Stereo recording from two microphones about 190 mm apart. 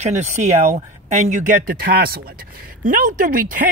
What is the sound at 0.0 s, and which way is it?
Speech, 35° right (ahead or behind).